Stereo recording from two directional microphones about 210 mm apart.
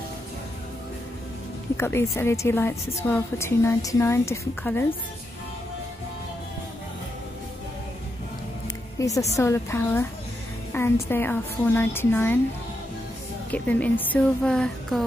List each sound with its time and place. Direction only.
1.8 s a woman's voice: 10° left (ahead or behind)
8.9 s a woman's voice: 15° left (ahead or behind)
13.5 s a woman's voice: 5° left (ahead or behind)